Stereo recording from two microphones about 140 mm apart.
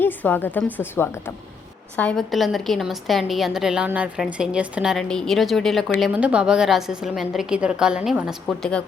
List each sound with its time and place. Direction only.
0.0 s a woman's voice: 15° left (ahead or behind)
2.0 s a woman's voice: 5° left (ahead or behind)
6.0 s a woman's voice: 10° right (ahead or behind)